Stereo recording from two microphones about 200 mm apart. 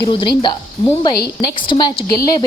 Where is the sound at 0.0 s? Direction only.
25° left (ahead or behind).